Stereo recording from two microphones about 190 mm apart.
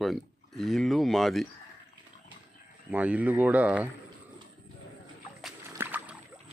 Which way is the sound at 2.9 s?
10° right (ahead or behind).